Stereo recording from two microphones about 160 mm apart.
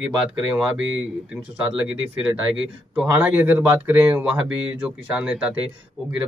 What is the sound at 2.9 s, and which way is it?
Speech, 10° right (ahead or behind).